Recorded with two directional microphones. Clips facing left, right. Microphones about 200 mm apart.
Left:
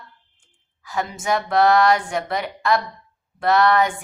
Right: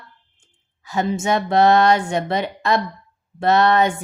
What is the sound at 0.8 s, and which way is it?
Speech, 25° right (ahead or behind).